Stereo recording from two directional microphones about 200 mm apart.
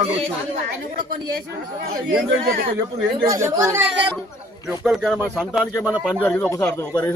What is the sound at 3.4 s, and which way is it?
A man's voice, 15° right (ahead or behind).